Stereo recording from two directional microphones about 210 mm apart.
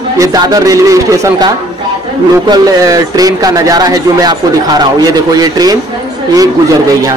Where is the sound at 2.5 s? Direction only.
15° right (ahead or behind).